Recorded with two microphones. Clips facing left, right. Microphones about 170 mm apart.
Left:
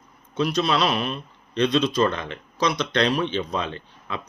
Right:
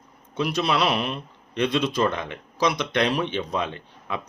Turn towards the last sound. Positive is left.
turn(degrees=-15)  # may be behind; listen again after turning